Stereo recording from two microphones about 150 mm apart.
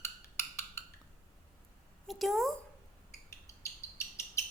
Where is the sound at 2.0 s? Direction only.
Centre (ahead or behind).